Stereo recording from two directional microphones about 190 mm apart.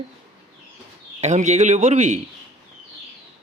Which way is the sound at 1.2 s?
40° right (ahead or behind).